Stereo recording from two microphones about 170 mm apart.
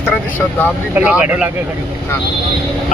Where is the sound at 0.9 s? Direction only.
10° right (ahead or behind).